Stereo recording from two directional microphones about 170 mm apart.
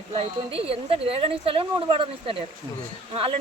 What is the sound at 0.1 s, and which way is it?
Speech, 35° right (ahead or behind).